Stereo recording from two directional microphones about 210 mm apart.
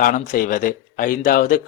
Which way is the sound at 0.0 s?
40° left (ahead or behind).